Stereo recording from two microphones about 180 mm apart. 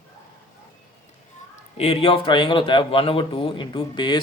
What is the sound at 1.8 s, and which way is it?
Speech, 35° left (ahead or behind).